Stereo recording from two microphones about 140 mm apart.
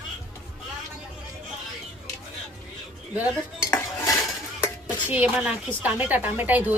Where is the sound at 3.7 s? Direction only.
25° left (ahead or behind).